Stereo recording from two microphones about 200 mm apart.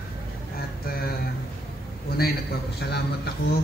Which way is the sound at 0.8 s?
50° left (ahead or behind).